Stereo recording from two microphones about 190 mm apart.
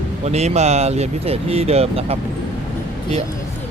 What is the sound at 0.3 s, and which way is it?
Speech, 35° right (ahead or behind).